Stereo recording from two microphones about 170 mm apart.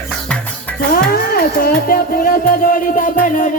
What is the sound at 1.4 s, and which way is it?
Music, 60° left (ahead or behind).